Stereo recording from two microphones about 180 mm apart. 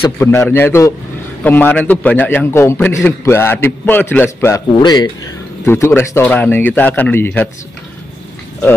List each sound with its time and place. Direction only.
0.2 s a man's voice: 15° left (ahead or behind)